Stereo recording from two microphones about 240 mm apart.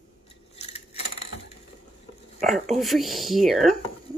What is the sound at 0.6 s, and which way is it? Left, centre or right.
Coin, left.